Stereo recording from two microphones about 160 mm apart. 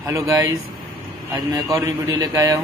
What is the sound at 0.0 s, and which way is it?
A man's voice, 20° right (ahead or behind).